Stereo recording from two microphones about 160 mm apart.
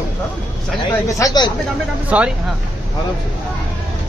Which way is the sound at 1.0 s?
20° left (ahead or behind).